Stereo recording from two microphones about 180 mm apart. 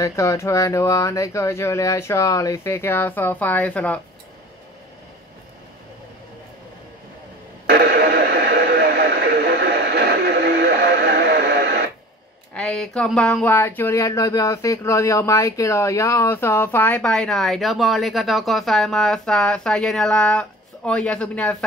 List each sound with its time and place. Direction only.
0.0 s speech: 15° left (ahead or behind)
7.6 s radio: 60° right (ahead or behind)
12.5 s speech: 5° left (ahead or behind)